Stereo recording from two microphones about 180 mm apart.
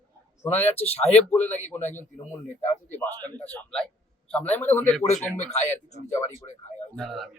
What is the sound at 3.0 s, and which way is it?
A man's voice, 10° left (ahead or behind).